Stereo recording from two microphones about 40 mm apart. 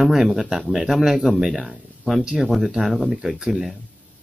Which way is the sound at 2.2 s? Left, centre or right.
Centre.